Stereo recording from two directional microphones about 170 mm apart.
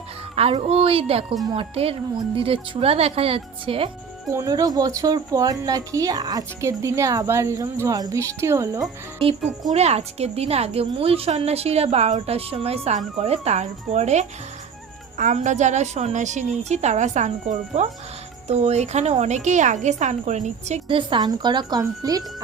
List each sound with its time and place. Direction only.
0.3 s a woman's voice: 35° right (ahead or behind)
4.3 s speech: 20° right (ahead or behind)
9.7 s a woman's voice: 40° right (ahead or behind)
20.8 s speech: 30° right (ahead or behind)